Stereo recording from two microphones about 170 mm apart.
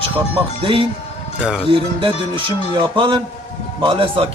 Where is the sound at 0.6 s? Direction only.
30° right (ahead or behind).